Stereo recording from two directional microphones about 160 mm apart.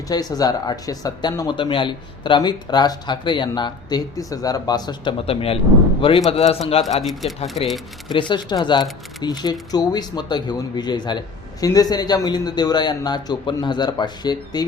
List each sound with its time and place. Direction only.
0.1 s a man's voice: 25° left (ahead or behind)
7.0 s speech: centre (ahead or behind)
8.1 s speech: 30° left (ahead or behind)